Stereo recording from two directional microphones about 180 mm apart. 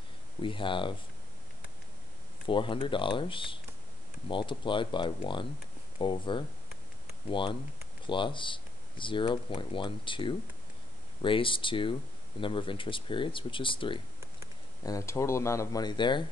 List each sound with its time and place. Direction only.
0.4 s speech: 30° left (ahead or behind)
2.4 s speech: 30° left (ahead or behind)